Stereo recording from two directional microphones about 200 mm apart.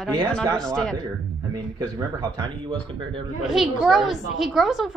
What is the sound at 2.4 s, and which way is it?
Speech, 25° right (ahead or behind).